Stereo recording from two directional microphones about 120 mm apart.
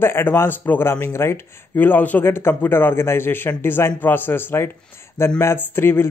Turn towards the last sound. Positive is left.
turn(degrees=20)  # may be behind; listen again after turning